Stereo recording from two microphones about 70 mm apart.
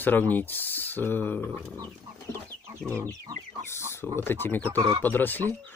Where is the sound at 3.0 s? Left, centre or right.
Right.